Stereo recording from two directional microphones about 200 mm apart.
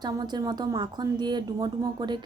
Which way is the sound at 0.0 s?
20° right (ahead or behind).